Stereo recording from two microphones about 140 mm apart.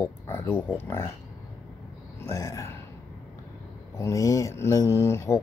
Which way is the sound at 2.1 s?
20° left (ahead or behind).